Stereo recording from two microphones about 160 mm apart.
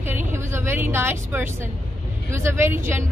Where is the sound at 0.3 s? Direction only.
15° right (ahead or behind).